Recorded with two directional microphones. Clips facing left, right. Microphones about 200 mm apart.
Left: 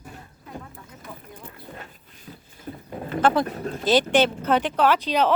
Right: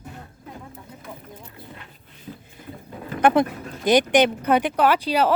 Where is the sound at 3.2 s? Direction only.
20° right (ahead or behind).